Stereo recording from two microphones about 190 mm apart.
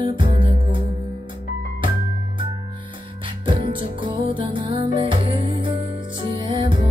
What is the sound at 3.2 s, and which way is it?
Music, 30° right (ahead or behind).